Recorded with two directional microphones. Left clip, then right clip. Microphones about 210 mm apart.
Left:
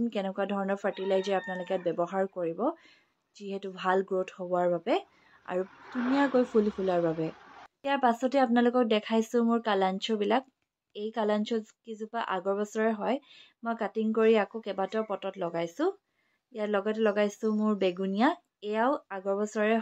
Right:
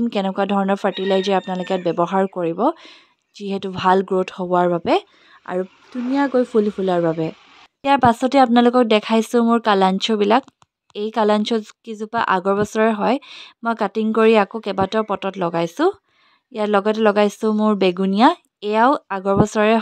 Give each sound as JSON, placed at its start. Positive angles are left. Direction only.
{"t": 0.0, "sound": "speech", "side_deg": -50}
{"t": 5.5, "sound": "speech", "side_deg": -35}